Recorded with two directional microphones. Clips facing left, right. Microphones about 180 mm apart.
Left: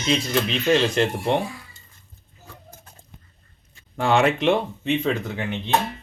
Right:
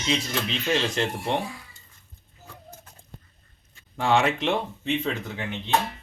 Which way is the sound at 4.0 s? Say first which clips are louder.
Left 3 dB; 55° left (ahead or behind).